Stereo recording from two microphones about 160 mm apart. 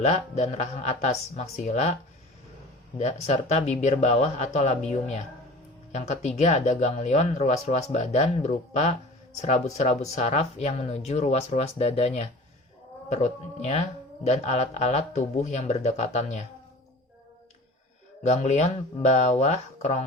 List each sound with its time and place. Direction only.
0.0 s speech: 45° left (ahead or behind)
3.0 s speech: 45° left (ahead or behind)
18.2 s speech: 45° left (ahead or behind)